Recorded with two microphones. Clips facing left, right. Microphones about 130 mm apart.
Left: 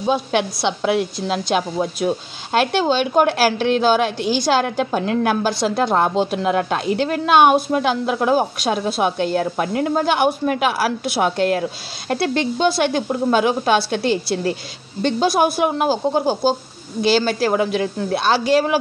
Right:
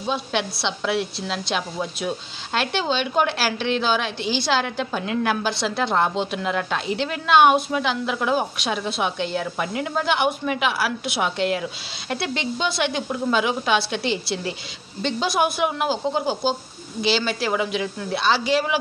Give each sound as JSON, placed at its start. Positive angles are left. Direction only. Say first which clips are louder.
{"t": 0.0, "sound": "a woman's voice", "louder": "left 6 dB", "side_deg": 50}